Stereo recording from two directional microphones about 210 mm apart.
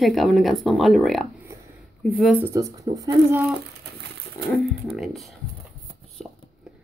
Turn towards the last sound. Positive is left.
turn(degrees=0)  # may be behind; listen again after turning